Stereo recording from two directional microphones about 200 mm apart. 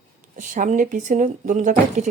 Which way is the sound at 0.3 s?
40° right (ahead or behind).